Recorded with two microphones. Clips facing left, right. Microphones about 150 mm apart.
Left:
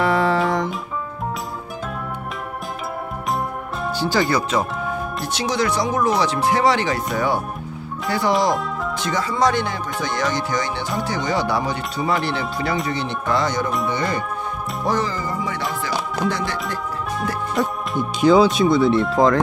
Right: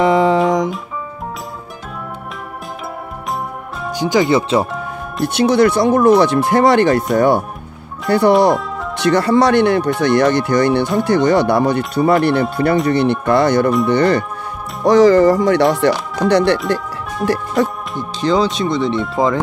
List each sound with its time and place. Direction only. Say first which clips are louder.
0.0 s music: right 6 dB; 20° right (ahead or behind)
3.9 s speech: right 6 dB; 15° right (ahead or behind)
5.2 s speech: right 11 dB; 60° right (ahead or behind)
14.9 s speech: right 15 dB; 80° right
17.9 s speech: left 2 dB; 10° left (ahead or behind)